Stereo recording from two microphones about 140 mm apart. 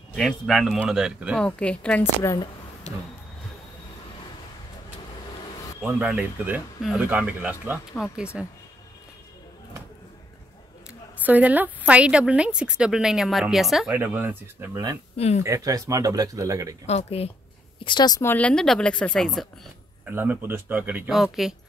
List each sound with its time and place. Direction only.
0.1 s speech: 5° left (ahead or behind)
1.4 s a woman's voice: 10° left (ahead or behind)
2.9 s speech: 55° left (ahead or behind)
5.8 s a woman's voice: 10° right (ahead or behind)
7.9 s speech: centre (ahead or behind)
11.2 s a woman's voice: 10° right (ahead or behind)
13.9 s a woman's voice: 10° right (ahead or behind)
15.1 s speech: 50° left (ahead or behind)
15.4 s speech: 25° right (ahead or behind)
16.8 s speech: 50° left (ahead or behind)
17.7 s speech: 35° left (ahead or behind)
18.2 s a woman's voice: 10° left (ahead or behind)
20.1 s a woman's voice: 15° right (ahead or behind)
21.1 s speech: centre (ahead or behind)